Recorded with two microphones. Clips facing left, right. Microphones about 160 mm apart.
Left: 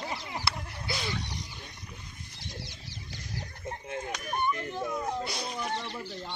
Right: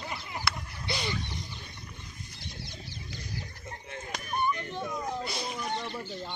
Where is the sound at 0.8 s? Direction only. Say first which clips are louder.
Right 2 dB; centre (ahead or behind).